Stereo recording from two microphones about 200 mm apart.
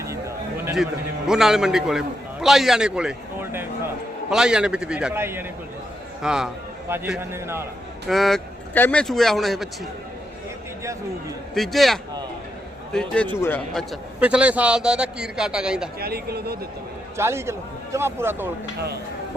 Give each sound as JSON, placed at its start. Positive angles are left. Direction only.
{"t": 1.3, "sound": "a man's voice", "side_deg": 0}
{"t": 8.0, "sound": "a man's voice", "side_deg": 0}
{"t": 11.5, "sound": "a man's voice", "side_deg": 0}
{"t": 16.0, "sound": "speech", "side_deg": -50}
{"t": 17.2, "sound": "a man's voice", "side_deg": -15}